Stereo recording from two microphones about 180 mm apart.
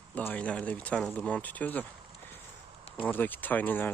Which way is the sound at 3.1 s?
10° left (ahead or behind).